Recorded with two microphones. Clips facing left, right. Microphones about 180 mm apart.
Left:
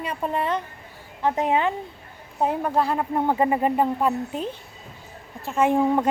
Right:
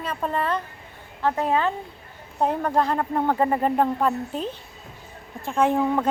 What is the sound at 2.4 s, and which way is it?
A woman's voice, 10° left (ahead or behind).